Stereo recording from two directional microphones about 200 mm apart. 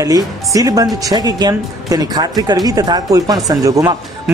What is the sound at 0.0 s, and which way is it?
Speech, 15° right (ahead or behind).